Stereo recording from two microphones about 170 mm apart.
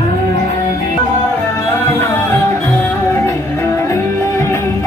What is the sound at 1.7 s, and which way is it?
Music, 15° left (ahead or behind).